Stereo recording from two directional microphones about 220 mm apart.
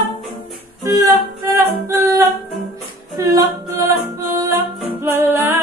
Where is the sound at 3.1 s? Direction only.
15° right (ahead or behind).